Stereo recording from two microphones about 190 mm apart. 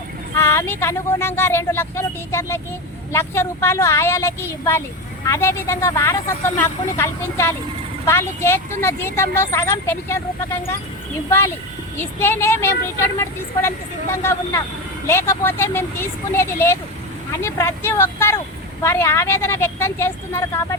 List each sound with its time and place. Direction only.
0.3 s speech: 15° left (ahead or behind)
11.3 s speech: 15° left (ahead or behind)